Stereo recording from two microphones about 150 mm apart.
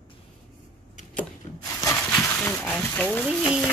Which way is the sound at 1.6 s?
20° left (ahead or behind).